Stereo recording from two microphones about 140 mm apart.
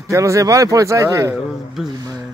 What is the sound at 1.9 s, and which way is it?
Speech, 25° right (ahead or behind).